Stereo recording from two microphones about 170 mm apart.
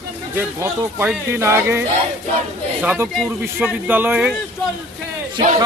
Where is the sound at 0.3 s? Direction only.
15° right (ahead or behind).